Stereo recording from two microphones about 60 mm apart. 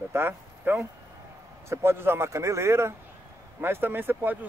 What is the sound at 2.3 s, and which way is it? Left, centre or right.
Speech, right.